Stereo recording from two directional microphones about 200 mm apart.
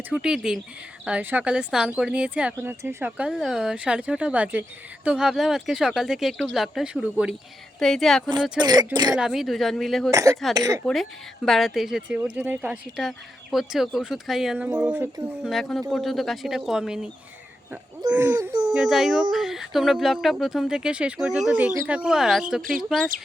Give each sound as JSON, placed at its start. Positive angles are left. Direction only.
{"t": 0.1, "sound": "speech", "side_deg": -5}
{"t": 8.5, "sound": "speech", "side_deg": -20}
{"t": 9.1, "sound": "speech", "side_deg": 0}
{"t": 10.1, "sound": "speech", "side_deg": -15}
{"t": 11.4, "sound": "speech", "side_deg": 0}
{"t": 18.1, "sound": "speech", "side_deg": -10}